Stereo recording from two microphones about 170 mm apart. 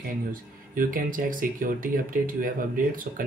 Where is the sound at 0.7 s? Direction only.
55° right (ahead or behind).